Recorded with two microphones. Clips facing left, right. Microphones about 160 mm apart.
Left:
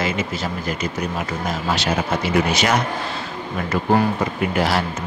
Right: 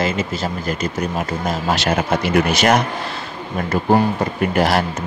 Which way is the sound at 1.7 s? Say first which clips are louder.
Right 3 dB; 50° right (ahead or behind).